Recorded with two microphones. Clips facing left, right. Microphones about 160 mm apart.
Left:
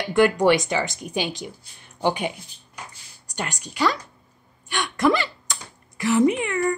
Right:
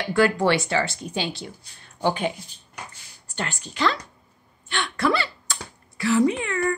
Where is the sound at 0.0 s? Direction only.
20° left (ahead or behind).